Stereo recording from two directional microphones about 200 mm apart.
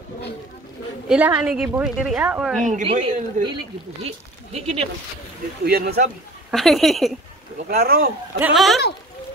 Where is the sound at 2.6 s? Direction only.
40° right (ahead or behind).